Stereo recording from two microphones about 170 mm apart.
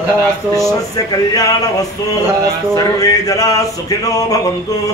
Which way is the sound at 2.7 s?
20° left (ahead or behind).